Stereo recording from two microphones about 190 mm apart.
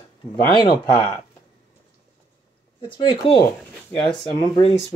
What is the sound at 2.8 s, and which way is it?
Speech, 25° left (ahead or behind).